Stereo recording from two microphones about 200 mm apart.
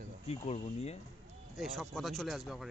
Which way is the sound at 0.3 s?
30° left (ahead or behind).